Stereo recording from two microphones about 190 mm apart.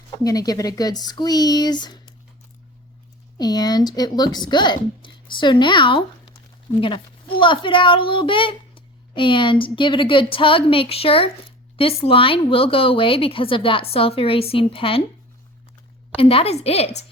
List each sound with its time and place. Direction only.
0.2 s a woman's voice: 20° left (ahead or behind)
3.3 s a woman's voice: 20° left (ahead or behind)
16.1 s a woman's voice: 30° left (ahead or behind)